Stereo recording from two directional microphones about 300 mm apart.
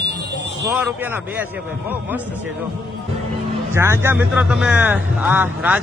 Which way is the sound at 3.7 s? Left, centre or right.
Centre.